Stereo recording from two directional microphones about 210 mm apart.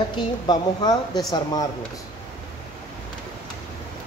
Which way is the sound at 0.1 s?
20° left (ahead or behind).